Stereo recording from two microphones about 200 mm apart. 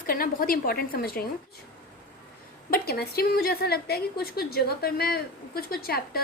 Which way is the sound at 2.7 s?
50° left (ahead or behind).